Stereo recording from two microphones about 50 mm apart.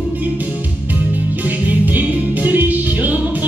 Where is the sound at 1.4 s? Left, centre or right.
Right.